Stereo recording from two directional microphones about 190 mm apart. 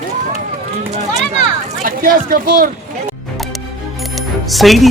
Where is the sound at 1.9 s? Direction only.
45° right (ahead or behind).